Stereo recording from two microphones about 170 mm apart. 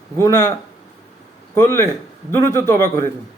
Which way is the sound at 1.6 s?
15° left (ahead or behind).